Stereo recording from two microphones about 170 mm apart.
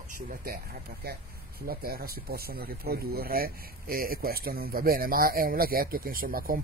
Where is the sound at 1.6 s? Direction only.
60° right (ahead or behind).